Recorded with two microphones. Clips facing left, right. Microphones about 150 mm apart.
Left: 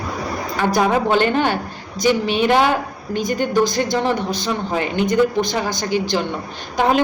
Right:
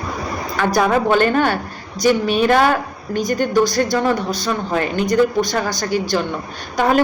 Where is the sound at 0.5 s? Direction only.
15° left (ahead or behind).